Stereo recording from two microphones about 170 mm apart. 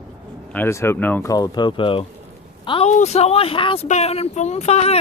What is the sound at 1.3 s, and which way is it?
A woman's voice, 25° left (ahead or behind).